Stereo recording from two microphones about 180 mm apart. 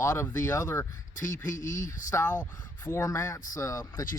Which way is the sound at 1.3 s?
45° left (ahead or behind).